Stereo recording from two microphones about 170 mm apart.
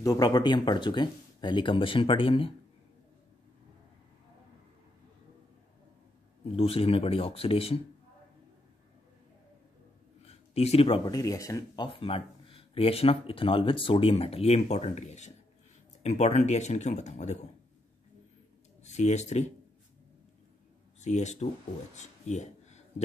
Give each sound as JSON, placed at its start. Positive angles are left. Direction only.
{"t": 0.0, "sound": "speech", "side_deg": 20}
{"t": 6.5, "sound": "speech", "side_deg": 35}
{"t": 10.2, "sound": "a sound", "side_deg": 40}
{"t": 11.1, "sound": "speech", "side_deg": 20}
{"t": 18.9, "sound": "speech", "side_deg": 40}
{"t": 21.0, "sound": "speech", "side_deg": 40}
{"t": 21.9, "sound": "a sound", "side_deg": 45}